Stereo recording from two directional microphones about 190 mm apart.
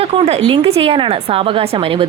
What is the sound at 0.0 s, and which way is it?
A woman's voice, 30° right (ahead or behind).